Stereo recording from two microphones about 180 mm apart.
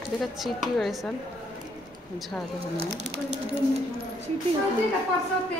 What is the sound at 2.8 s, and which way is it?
Speech, 35° right (ahead or behind).